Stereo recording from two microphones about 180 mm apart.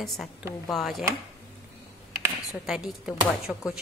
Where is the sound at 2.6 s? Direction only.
5° right (ahead or behind).